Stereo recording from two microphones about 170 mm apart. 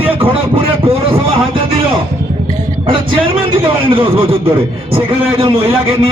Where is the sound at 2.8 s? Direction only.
30° right (ahead or behind).